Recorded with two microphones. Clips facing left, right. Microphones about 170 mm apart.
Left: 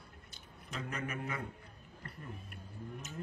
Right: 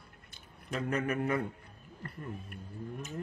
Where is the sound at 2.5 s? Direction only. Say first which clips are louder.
Right 5 dB; 50° right (ahead or behind).